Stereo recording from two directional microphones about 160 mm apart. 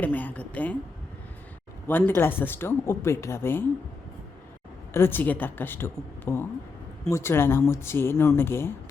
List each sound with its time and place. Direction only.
0.0 s speech: 10° left (ahead or behind)
1.9 s speech: 15° left (ahead or behind)
4.9 s speech: 15° left (ahead or behind)